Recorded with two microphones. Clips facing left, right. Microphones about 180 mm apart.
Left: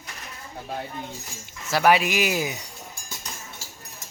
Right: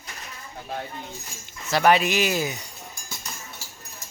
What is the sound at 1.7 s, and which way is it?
Speech, 5° left (ahead or behind).